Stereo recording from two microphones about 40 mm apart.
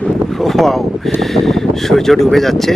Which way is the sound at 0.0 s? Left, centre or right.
Centre.